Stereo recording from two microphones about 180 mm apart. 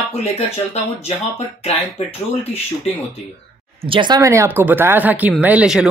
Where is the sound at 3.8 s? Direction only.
25° right (ahead or behind).